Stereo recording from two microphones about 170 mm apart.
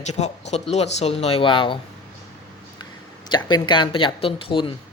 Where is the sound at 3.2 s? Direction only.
25° left (ahead or behind).